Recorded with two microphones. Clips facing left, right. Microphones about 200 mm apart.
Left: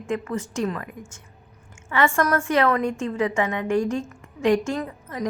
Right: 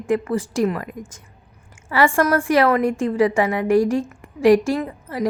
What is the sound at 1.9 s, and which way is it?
A woman's voice, 30° right (ahead or behind).